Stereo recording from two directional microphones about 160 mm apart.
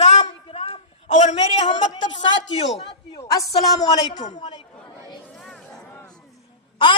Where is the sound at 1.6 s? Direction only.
30° left (ahead or behind).